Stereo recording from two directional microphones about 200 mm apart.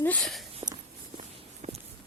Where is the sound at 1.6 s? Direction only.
30° right (ahead or behind).